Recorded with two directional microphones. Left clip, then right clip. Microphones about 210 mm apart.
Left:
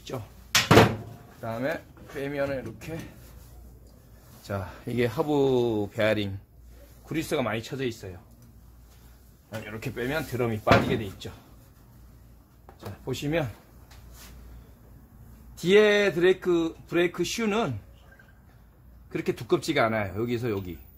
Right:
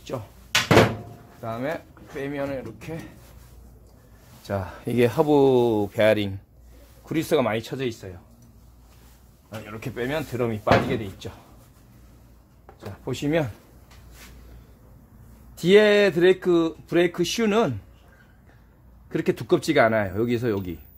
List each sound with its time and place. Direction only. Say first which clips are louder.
0.1 s speech: right 5 dB; 20° right (ahead or behind)
1.4 s speech: right 1 dB; 20° right (ahead or behind)
4.5 s speech: right 5 dB; 30° right (ahead or behind)
9.7 s speech: right 3 dB; 15° right (ahead or behind)
13.0 s speech: right 4 dB; 30° right (ahead or behind)
15.5 s speech: right 3 dB; 30° right (ahead or behind)
19.0 s speech: right 4 dB; 35° right (ahead or behind)